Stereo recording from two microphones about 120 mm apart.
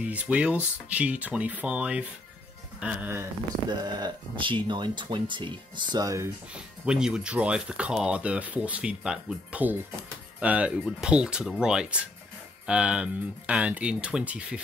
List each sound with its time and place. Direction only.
0.0 s speech: 10° right (ahead or behind)
3.8 s speech: 35° right (ahead or behind)
6.5 s speech: 5° right (ahead or behind)